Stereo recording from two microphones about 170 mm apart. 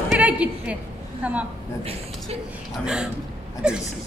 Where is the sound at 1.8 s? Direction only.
35° right (ahead or behind).